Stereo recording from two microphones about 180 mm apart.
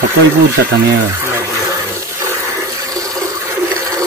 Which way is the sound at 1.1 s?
15° right (ahead or behind).